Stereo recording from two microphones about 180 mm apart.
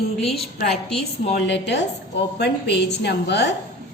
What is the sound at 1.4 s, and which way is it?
A woman's voice, 75° left (ahead or behind).